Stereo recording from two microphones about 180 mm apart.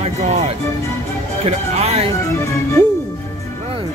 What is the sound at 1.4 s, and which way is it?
Music, 35° right (ahead or behind).